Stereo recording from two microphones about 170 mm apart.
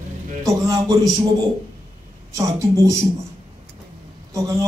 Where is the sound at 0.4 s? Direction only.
20° right (ahead or behind).